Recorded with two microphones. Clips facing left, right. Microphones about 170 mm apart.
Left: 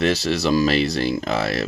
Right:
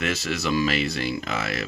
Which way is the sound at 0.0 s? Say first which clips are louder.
Left 7 dB; 35° left (ahead or behind).